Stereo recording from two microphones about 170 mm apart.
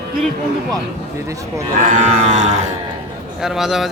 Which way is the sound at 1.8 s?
45° right (ahead or behind).